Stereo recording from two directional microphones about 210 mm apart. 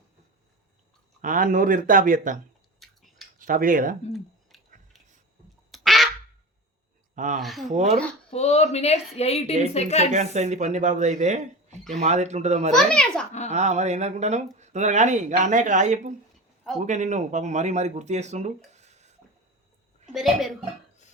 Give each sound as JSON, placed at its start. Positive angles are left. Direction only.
{"t": 1.2, "sound": "speech", "side_deg": -40}
{"t": 2.8, "sound": "chewing", "side_deg": 0}
{"t": 3.3, "sound": "speech", "side_deg": -40}
{"t": 4.1, "sound": "a sound", "side_deg": 0}
{"t": 5.7, "sound": "quack", "side_deg": 0}
{"t": 7.3, "sound": "a child's voice", "side_deg": 0}
{"t": 7.7, "sound": "speech", "side_deg": -35}
{"t": 8.3, "sound": "speech", "side_deg": 30}
{"t": 10.1, "sound": "speech", "side_deg": -35}
{"t": 12.7, "sound": "a child's voice", "side_deg": 5}
{"t": 13.5, "sound": "speech", "side_deg": -35}
{"t": 20.1, "sound": "a child's voice", "side_deg": 0}